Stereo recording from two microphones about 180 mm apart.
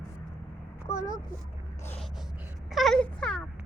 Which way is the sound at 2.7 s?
Centre (ahead or behind).